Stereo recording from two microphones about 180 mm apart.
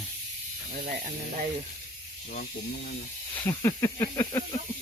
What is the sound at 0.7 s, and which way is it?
Speech, 50° right (ahead or behind).